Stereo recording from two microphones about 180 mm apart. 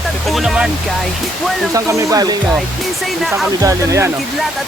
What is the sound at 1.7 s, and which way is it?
Speech, 20° right (ahead or behind).